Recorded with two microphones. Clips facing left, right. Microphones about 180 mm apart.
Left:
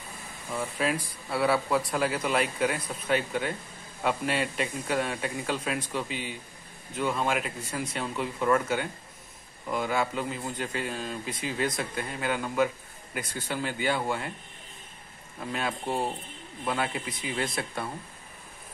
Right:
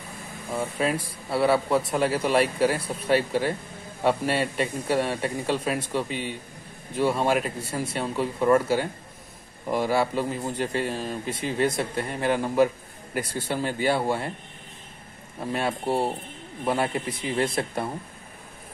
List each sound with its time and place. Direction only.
0.5 s a man's voice: 30° right (ahead or behind)
15.4 s a man's voice: 35° right (ahead or behind)